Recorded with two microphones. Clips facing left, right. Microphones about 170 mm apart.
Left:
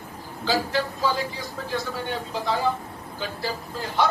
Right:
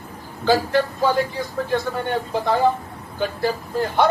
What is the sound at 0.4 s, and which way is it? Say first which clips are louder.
A man's voice: right 6 dB; 55° right (ahead or behind).